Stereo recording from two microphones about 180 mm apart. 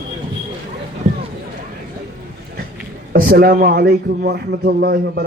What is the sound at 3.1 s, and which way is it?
A man's voice, 55° right (ahead or behind).